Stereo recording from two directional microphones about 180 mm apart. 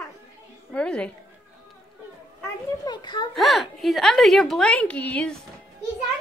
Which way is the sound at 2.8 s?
25° left (ahead or behind).